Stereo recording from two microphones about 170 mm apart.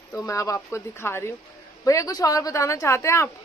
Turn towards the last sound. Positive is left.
turn(degrees=15)  # may be behind; listen again after turning